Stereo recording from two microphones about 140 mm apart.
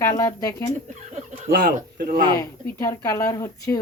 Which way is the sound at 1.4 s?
85° right.